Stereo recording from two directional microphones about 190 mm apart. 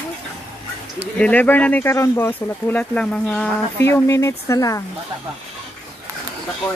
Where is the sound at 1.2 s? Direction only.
10° left (ahead or behind).